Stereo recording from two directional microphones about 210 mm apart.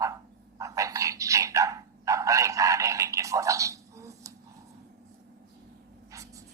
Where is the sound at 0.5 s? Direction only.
15° right (ahead or behind).